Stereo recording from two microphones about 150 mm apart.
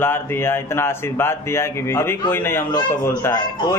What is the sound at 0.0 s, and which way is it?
Speech, 15° left (ahead or behind).